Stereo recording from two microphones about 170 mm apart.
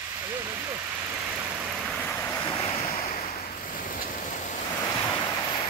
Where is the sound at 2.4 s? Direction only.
30° left (ahead or behind).